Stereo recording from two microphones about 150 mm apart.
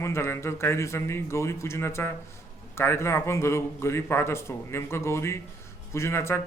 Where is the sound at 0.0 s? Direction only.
15° left (ahead or behind).